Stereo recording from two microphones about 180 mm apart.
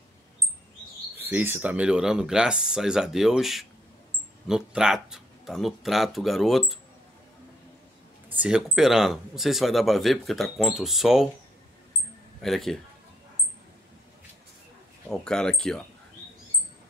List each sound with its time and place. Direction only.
1.1 s speech: 10° right (ahead or behind)
8.3 s speech: 5° right (ahead or behind)
12.4 s speech: centre (ahead or behind)
15.0 s speech: 5° left (ahead or behind)